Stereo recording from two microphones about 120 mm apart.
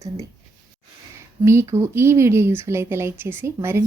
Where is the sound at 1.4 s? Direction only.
25° right (ahead or behind).